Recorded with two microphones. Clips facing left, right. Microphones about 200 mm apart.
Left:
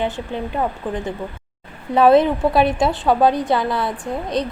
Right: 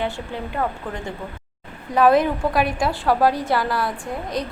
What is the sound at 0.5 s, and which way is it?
A woman's voice, 20° left (ahead or behind).